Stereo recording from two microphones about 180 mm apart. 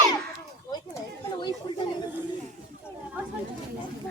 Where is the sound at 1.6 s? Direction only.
25° left (ahead or behind).